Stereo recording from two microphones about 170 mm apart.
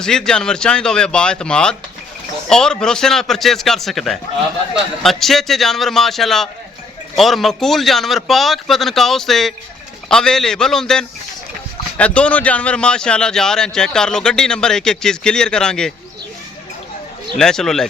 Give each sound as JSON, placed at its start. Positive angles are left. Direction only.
{"t": 0.0, "sound": "speech", "side_deg": 5}
{"t": 17.3, "sound": "speech", "side_deg": 5}